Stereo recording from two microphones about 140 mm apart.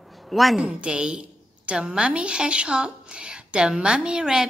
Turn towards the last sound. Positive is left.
turn(degrees=-5)  # may be behind; listen again after turning